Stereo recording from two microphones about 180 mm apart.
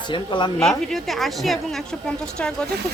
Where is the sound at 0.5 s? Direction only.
5° left (ahead or behind).